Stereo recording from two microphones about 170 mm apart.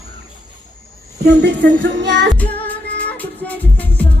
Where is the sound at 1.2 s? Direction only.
90° right.